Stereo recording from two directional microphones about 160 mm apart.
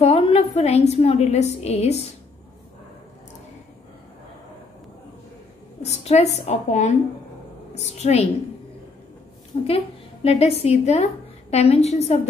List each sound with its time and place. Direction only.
0.0 s a woman's voice: 35° left (ahead or behind)
5.8 s a woman's voice: 45° left (ahead or behind)
9.7 s a woman's voice: 40° left (ahead or behind)